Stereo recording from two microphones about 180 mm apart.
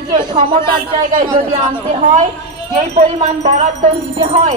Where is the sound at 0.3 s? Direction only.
25° right (ahead or behind).